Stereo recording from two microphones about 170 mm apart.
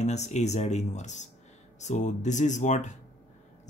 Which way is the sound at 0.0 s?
40° left (ahead or behind).